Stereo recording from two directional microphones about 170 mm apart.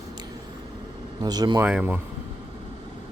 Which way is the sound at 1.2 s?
25° right (ahead or behind).